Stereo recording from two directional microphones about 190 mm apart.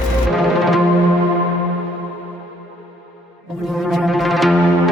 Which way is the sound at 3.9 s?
Centre (ahead or behind).